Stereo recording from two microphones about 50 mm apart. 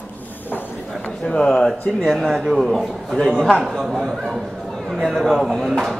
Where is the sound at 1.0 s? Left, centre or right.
Centre.